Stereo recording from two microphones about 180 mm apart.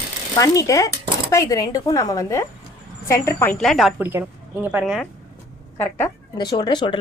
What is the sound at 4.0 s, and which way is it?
Speech, 10° right (ahead or behind).